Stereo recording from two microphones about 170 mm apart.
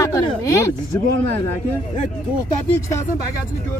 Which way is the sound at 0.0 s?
20° left (ahead or behind).